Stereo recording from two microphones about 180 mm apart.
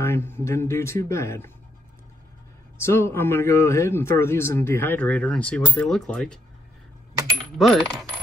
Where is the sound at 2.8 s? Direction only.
15° left (ahead or behind).